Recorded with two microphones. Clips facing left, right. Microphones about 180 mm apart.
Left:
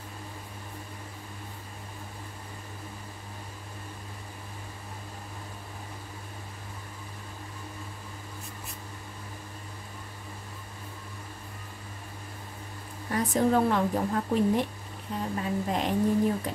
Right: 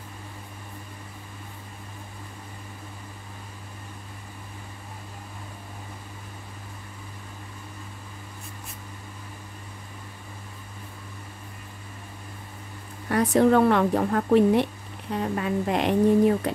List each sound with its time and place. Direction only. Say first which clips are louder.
13.1 s a woman's voice: right 6 dB; 70° right (ahead or behind)